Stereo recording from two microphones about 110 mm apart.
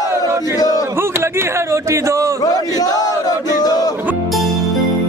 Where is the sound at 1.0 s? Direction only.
25° right (ahead or behind).